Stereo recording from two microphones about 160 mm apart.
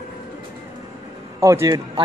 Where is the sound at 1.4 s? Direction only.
20° right (ahead or behind).